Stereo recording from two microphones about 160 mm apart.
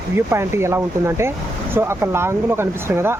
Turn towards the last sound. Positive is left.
turn(degrees=-15)  # may be behind; listen again after turning